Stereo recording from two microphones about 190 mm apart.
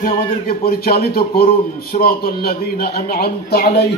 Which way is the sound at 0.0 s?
50° left (ahead or behind).